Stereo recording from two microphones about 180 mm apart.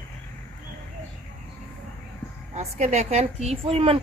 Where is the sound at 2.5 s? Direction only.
40° right (ahead or behind).